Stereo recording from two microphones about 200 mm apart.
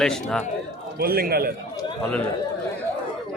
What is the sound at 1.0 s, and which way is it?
Speech, 50° right (ahead or behind).